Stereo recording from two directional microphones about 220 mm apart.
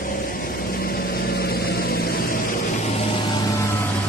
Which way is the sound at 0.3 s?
40° left (ahead or behind).